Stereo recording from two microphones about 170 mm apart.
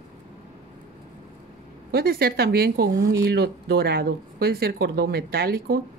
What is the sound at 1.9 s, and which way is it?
Speech, 65° right (ahead or behind).